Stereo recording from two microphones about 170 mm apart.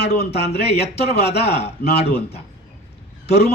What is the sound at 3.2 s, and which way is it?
Speech, 75° left (ahead or behind).